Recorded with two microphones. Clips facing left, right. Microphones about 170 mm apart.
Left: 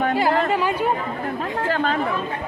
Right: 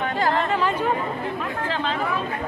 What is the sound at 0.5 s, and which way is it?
Speech, 10° left (ahead or behind).